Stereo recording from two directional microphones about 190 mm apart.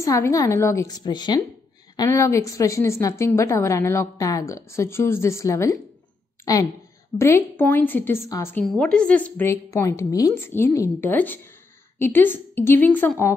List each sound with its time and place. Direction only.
0.0 s a woman's voice: 15° left (ahead or behind)